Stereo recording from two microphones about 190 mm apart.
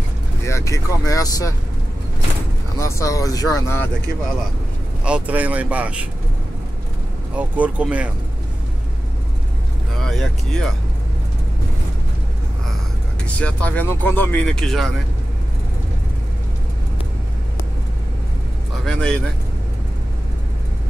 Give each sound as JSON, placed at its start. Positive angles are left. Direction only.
{"t": 0.5, "sound": "speech", "side_deg": 15}
{"t": 2.8, "sound": "speech", "side_deg": 15}
{"t": 5.0, "sound": "speech", "side_deg": -5}
{"t": 7.3, "sound": "speech", "side_deg": -5}
{"t": 10.0, "sound": "speech", "side_deg": 5}
{"t": 13.4, "sound": "speech", "side_deg": 5}
{"t": 18.9, "sound": "speech", "side_deg": 5}